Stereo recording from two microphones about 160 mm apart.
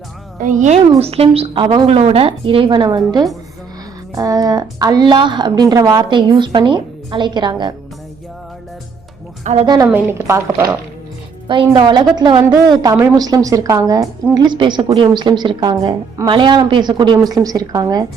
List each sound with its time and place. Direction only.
0.3 s a woman's voice: 50° right (ahead or behind); by 7.7 s 25° right (ahead or behind)
9.4 s a woman's voice: 45° right (ahead or behind)
9.8 s a woman's voice: 15° right (ahead or behind)
11.4 s a woman's voice: 30° right (ahead or behind)